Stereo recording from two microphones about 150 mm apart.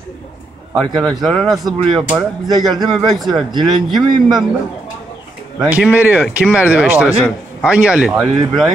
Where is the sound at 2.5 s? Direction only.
25° right (ahead or behind).